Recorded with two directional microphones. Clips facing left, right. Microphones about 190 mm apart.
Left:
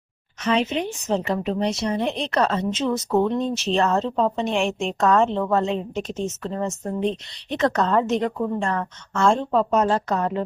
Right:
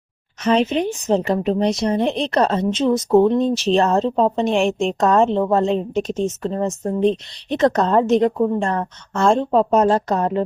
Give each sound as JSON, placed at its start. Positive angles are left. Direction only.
{"t": 0.4, "sound": "a woman's voice", "side_deg": -35}